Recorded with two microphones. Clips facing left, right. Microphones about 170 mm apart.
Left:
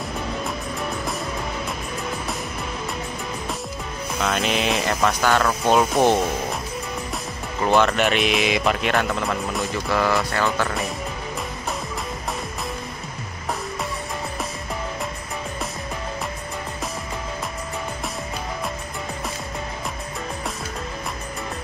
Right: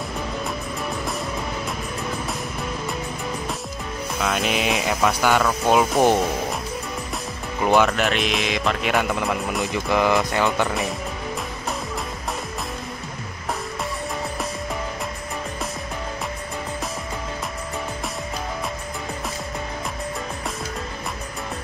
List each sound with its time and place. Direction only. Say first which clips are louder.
4.2 s speech: even; 5° right (ahead or behind)
7.6 s speech: even; 5° right (ahead or behind)
8.8 s speech: even; 5° right (ahead or behind)
9.7 s speech: right 2 dB; 15° right (ahead or behind)